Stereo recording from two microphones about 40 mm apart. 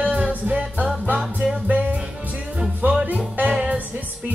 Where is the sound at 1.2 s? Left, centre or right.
Centre.